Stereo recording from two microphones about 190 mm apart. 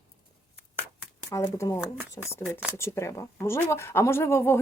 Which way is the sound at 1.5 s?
15° left (ahead or behind).